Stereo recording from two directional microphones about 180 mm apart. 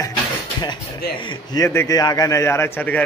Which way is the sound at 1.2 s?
25° left (ahead or behind).